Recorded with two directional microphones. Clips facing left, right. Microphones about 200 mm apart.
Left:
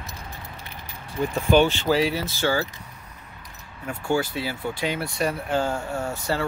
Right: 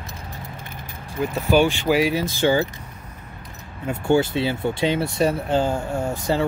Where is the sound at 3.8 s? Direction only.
25° right (ahead or behind).